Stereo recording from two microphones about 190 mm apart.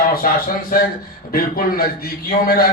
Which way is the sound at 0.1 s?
50° left (ahead or behind).